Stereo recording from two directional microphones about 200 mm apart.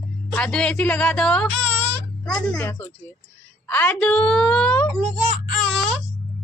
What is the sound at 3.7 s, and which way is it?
A woman's voice, 10° left (ahead or behind).